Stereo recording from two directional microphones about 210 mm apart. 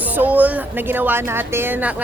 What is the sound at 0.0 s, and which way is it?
A woman's voice, 10° right (ahead or behind).